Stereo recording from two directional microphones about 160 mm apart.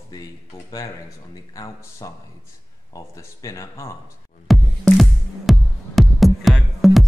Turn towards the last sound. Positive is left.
turn(degrees=0)  # may be behind; listen again after turning